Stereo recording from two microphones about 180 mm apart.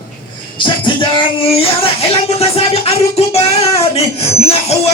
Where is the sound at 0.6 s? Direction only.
25° left (ahead or behind).